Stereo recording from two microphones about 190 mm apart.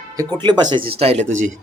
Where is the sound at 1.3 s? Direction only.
90° right.